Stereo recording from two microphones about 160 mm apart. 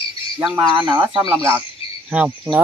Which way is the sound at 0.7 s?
30° right (ahead or behind).